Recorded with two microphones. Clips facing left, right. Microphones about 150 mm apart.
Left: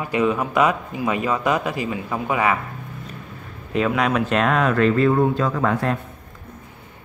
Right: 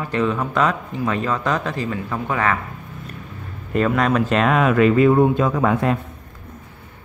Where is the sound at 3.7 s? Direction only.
Centre (ahead or behind); by 5.8 s 20° right (ahead or behind).